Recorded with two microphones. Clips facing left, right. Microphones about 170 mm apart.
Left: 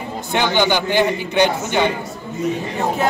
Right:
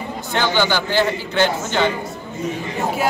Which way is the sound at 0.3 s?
15° left (ahead or behind).